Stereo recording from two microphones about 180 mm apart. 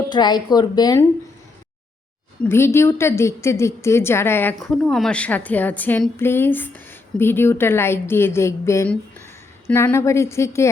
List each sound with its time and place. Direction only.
0.1 s a woman's voice: 25° left (ahead or behind)
2.4 s a woman's voice: 15° left (ahead or behind)